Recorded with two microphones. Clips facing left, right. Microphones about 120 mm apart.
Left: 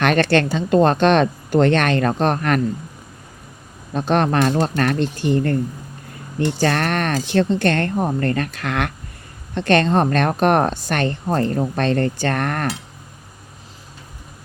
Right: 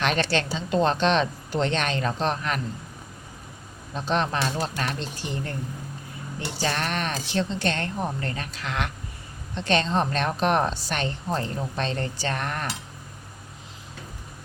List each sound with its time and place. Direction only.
0.0 s a woman's voice: 55° left (ahead or behind)
3.9 s a woman's voice: 55° left (ahead or behind)
6.6 s a woman's voice: 60° left (ahead or behind)